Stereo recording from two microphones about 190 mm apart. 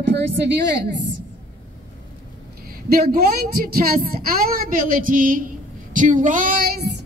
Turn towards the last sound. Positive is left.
turn(degrees=-50)  # may be behind; listen again after turning